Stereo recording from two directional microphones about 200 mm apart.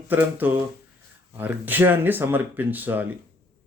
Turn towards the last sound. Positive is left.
turn(degrees=-10)  # may be behind; listen again after turning